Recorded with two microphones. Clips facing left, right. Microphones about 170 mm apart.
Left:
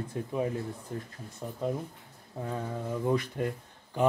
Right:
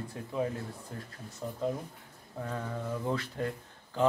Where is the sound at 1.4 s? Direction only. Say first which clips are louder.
Left 1 dB; 10° left (ahead or behind).